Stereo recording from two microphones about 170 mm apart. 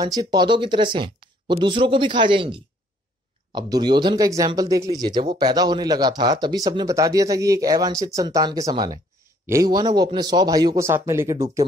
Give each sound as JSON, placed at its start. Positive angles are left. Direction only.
{"t": 0.0, "sound": "speech", "side_deg": -25}